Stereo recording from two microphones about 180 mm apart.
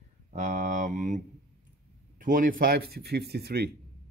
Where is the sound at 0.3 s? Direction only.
45° right (ahead or behind).